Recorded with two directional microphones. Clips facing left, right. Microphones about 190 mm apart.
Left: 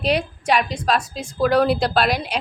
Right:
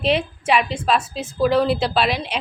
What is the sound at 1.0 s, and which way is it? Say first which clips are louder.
A woman's voice: right 1 dB; 5° right (ahead or behind).